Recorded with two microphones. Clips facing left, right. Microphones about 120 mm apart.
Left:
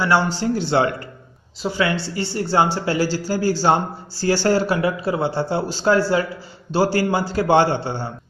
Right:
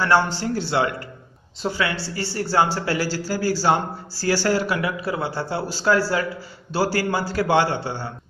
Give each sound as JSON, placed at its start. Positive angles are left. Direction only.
{"t": 0.0, "sound": "speech", "side_deg": 15}
{"t": 0.7, "sound": "a man's voice", "side_deg": 30}